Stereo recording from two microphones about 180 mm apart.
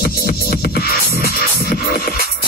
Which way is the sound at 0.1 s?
55° left (ahead or behind).